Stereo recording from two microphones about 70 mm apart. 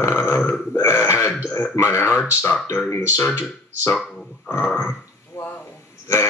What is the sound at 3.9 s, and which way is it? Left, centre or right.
Speech, centre.